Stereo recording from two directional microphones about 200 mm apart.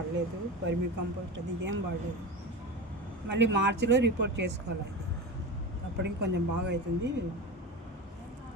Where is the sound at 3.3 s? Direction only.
65° right (ahead or behind).